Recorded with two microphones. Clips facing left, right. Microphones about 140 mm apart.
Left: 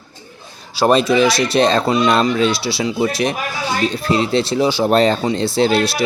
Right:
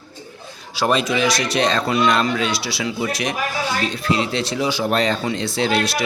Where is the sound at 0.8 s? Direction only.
35° left (ahead or behind).